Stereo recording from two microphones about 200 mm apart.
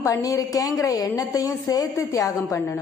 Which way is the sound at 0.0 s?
15° left (ahead or behind).